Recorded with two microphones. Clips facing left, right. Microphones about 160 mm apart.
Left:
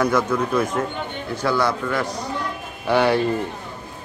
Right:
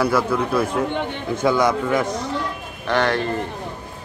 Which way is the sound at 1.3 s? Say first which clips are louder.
Right 3 dB; 20° right (ahead or behind).